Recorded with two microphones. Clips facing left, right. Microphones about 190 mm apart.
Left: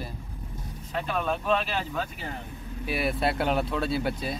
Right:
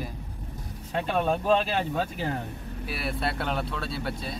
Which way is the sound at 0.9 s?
30° right (ahead or behind).